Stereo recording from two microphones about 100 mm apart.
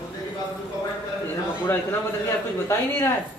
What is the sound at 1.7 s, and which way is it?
Speech, 25° left (ahead or behind).